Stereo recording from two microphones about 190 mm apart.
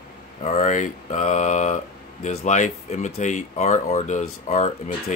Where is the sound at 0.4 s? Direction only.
40° left (ahead or behind).